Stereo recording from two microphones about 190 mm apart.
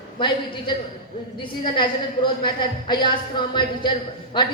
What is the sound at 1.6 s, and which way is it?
Speech, 25° left (ahead or behind).